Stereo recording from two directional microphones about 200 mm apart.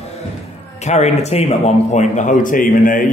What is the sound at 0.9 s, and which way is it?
A man's voice, 35° left (ahead or behind).